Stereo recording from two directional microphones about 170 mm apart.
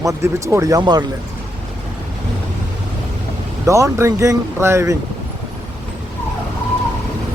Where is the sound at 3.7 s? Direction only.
15° right (ahead or behind).